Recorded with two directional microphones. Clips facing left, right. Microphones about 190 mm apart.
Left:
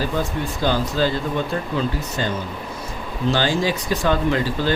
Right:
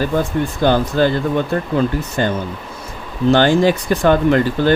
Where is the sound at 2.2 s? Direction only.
55° right (ahead or behind).